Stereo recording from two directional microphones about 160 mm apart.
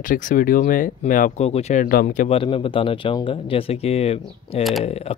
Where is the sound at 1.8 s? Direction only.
60° left (ahead or behind).